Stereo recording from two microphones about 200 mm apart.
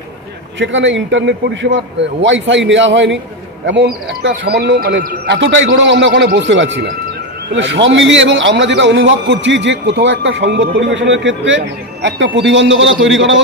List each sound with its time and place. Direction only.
0.6 s a man's voice: 65° right (ahead or behind)